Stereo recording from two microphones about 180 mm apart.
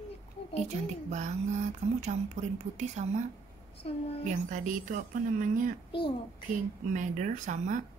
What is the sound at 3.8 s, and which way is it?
Speech, 30° left (ahead or behind).